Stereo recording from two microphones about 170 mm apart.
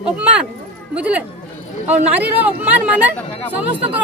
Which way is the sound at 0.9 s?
10° right (ahead or behind).